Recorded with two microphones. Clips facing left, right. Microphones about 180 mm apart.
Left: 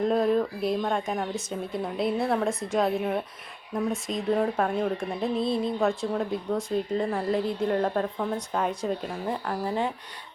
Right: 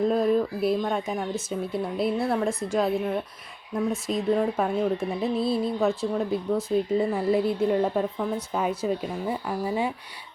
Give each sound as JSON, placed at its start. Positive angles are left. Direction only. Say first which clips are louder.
{"t": 0.0, "sound": "a woman's voice", "louder": "right 1 dB", "side_deg": 0}